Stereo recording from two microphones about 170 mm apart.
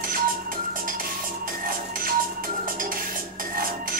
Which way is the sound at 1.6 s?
55° right (ahead or behind).